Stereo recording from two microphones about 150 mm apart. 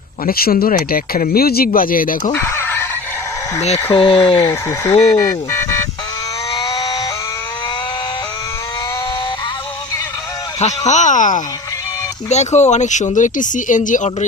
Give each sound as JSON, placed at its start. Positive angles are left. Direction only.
{"t": 0.3, "sound": "speech", "side_deg": 80}
{"t": 2.3, "sound": "fowl", "side_deg": 15}
{"t": 3.9, "sound": "speech", "side_deg": 35}
{"t": 4.4, "sound": "speech", "side_deg": 15}
{"t": 6.5, "sound": "a sound", "side_deg": 30}
{"t": 10.6, "sound": "speech", "side_deg": 50}